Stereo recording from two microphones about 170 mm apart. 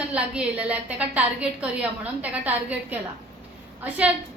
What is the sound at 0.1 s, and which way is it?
A woman's voice, 5° right (ahead or behind).